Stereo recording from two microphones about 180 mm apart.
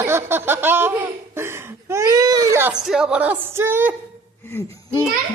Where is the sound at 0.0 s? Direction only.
15° right (ahead or behind).